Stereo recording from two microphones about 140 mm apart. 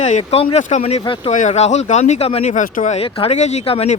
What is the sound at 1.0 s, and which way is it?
Speech, 35° left (ahead or behind).